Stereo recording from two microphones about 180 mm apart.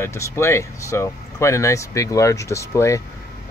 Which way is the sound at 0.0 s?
15° left (ahead or behind).